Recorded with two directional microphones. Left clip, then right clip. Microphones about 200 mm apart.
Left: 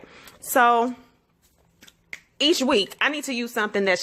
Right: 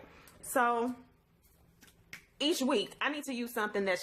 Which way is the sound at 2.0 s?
35° left (ahead or behind).